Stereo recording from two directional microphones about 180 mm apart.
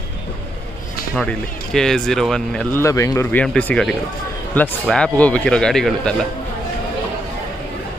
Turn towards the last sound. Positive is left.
turn(degrees=5)  # may be behind; listen again after turning